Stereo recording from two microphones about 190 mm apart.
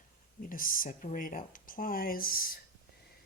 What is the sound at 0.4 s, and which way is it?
Speech, 45° left (ahead or behind).